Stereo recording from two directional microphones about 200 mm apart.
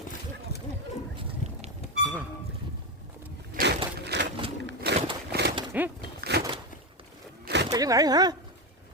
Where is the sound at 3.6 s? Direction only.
55° right (ahead or behind).